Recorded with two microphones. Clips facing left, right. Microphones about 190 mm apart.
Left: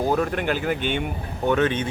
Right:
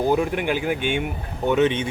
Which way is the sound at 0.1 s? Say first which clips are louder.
Right 2 dB; 10° right (ahead or behind).